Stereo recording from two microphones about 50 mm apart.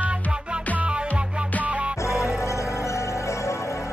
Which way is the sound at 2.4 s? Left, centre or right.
Left.